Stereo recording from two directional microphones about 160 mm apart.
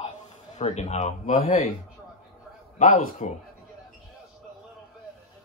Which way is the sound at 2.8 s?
50° left (ahead or behind).